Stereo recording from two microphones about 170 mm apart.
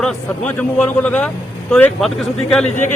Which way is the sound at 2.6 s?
45° left (ahead or behind).